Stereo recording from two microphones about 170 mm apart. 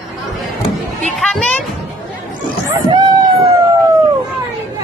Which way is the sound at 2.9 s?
25° right (ahead or behind).